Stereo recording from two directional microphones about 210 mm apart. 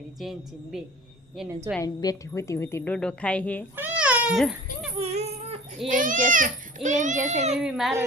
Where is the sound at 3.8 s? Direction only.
5° right (ahead or behind).